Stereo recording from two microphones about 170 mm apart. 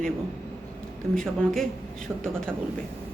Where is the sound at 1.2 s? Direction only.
Centre (ahead or behind).